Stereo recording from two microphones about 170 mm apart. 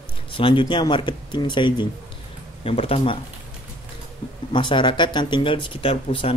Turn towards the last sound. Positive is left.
turn(degrees=30)  # may be behind; listen again after turning